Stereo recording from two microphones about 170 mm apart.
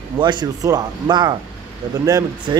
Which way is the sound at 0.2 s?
25° right (ahead or behind).